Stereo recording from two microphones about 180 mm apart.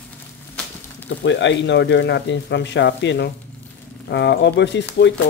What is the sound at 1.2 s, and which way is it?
Speech, 80° left.